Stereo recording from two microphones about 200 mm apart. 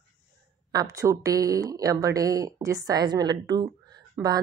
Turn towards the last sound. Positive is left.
turn(degrees=-20)  # may be behind; listen again after turning